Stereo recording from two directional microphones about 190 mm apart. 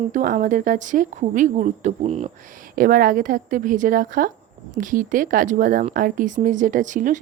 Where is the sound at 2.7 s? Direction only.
50° right (ahead or behind).